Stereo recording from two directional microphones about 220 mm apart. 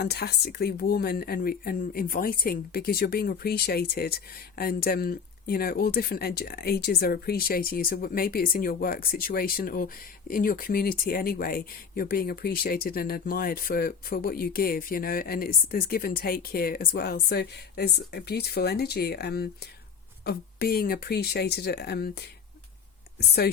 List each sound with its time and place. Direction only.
0.0 s speech: 45° left (ahead or behind)